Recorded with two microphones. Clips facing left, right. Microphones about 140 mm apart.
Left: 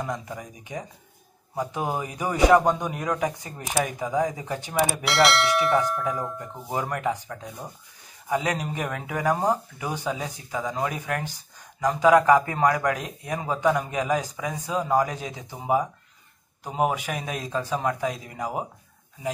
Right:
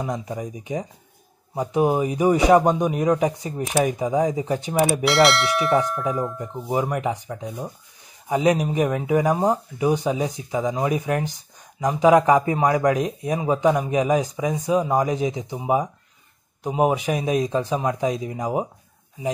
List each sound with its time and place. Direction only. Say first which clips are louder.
0.0 s speech: right 4 dB; 25° right (ahead or behind)
4.8 s speech: right 4 dB; centre (ahead or behind)
6.7 s speech: right 4 dB; 15° right (ahead or behind)